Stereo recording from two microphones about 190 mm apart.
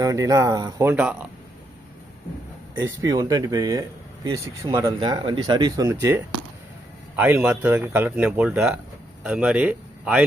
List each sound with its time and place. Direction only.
0.0 s speech: 20° right (ahead or behind)
2.7 s speech: 15° right (ahead or behind)
4.9 s speech: 25° right (ahead or behind); by 10.2 s 5° right (ahead or behind)